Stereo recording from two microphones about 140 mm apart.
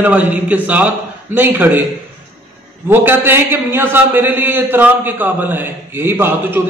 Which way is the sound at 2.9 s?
15° right (ahead or behind).